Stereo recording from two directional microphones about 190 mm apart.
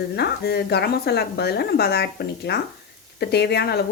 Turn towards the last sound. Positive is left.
turn(degrees=60)  # may be behind; listen again after turning